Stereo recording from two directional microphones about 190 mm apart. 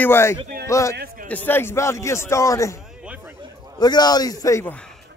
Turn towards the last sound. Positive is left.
turn(degrees=15)  # may be behind; listen again after turning